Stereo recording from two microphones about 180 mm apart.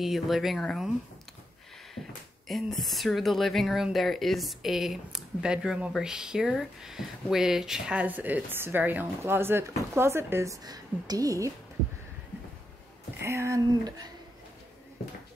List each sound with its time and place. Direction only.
0.0 s speech: centre (ahead or behind)
2.4 s speech: centre (ahead or behind); by 11.5 s 20° right (ahead or behind)
13.2 s a sound: 15° right (ahead or behind)